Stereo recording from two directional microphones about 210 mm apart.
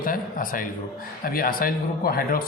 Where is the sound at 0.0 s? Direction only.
40° left (ahead or behind).